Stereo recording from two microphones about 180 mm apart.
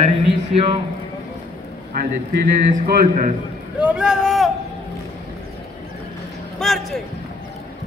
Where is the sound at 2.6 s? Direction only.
60° right (ahead or behind).